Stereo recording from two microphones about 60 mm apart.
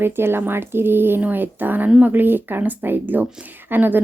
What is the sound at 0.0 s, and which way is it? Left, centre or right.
Speech, right.